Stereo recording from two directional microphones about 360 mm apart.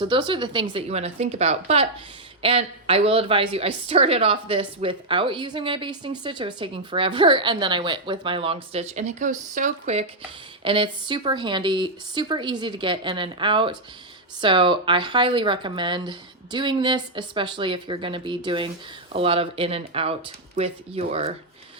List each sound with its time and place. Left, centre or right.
0.0 s a woman's voice: centre